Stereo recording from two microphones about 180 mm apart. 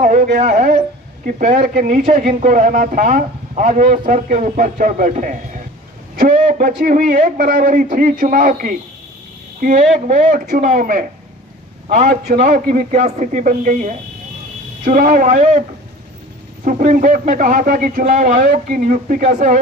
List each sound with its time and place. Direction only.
0.0 s speech: 45° right (ahead or behind)
16.6 s speech: 45° right (ahead or behind)